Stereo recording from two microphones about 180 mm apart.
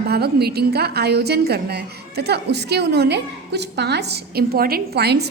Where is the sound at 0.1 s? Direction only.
60° right (ahead or behind).